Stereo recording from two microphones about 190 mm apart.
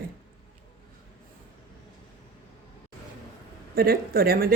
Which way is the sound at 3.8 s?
55° right (ahead or behind).